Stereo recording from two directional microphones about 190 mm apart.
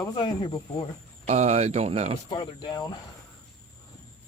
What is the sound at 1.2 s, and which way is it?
Speech, 35° right (ahead or behind).